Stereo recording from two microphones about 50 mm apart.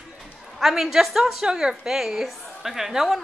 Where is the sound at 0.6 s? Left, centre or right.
Centre.